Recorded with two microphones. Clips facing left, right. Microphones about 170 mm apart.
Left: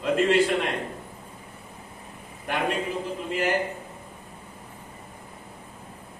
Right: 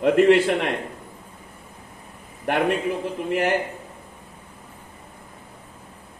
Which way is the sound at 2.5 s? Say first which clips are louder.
Right 6 dB; 65° right (ahead or behind).